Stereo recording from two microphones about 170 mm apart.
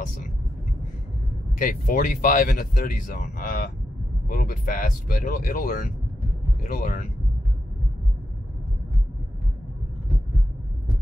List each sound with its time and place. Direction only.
1.6 s speech: 55° left (ahead or behind)